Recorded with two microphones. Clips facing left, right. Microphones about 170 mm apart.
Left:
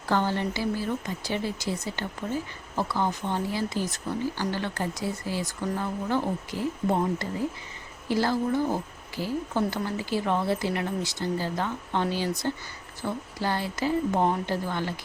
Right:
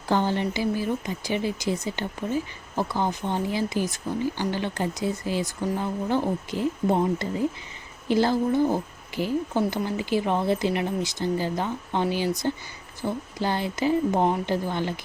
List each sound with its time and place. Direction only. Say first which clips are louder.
0.1 s a woman's voice: right 2 dB; 15° right (ahead or behind)